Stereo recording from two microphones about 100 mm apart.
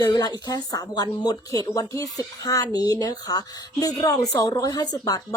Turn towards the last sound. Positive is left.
turn(degrees=40)  # may be behind; listen again after turning